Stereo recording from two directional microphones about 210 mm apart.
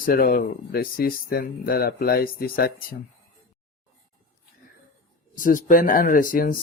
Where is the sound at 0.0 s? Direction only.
45° left (ahead or behind).